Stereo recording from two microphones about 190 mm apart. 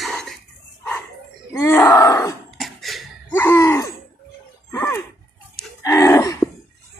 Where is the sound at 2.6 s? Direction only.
Centre (ahead or behind).